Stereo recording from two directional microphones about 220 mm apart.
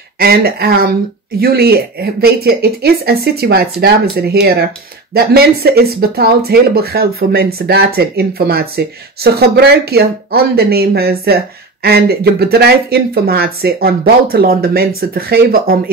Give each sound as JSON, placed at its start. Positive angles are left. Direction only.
{"t": 0.2, "sound": "speech", "side_deg": -45}